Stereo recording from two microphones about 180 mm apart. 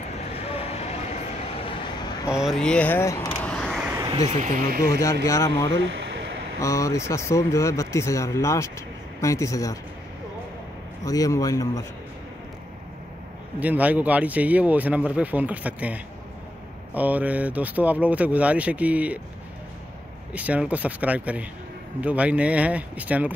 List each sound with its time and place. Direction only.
0.4 s vehicle: 35° left (ahead or behind)
2.3 s speech: centre (ahead or behind)
4.4 s speech: 45° right (ahead or behind)
4.8 s speech: 15° left (ahead or behind)
11.1 s speech: 20° left (ahead or behind)
13.6 s speech: 10° right (ahead or behind)
20.3 s speech: 10° right (ahead or behind)